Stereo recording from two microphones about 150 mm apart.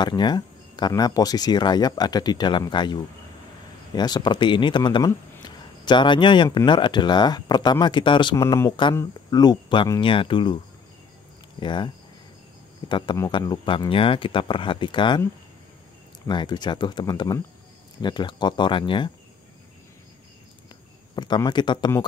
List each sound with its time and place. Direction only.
0.0 s speech: 30° left (ahead or behind)
11.6 s speech: 30° left (ahead or behind)
16.3 s speech: 30° left (ahead or behind)
21.1 s a sound: 30° left (ahead or behind)
21.5 s speech: 30° left (ahead or behind)